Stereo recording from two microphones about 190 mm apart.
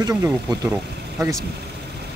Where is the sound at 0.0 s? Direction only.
15° right (ahead or behind).